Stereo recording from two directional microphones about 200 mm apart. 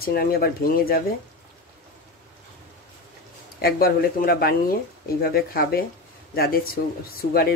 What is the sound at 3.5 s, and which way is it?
Speech, 50° left (ahead or behind).